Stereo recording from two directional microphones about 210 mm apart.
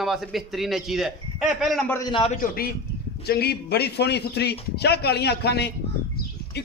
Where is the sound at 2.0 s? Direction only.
25° left (ahead or behind).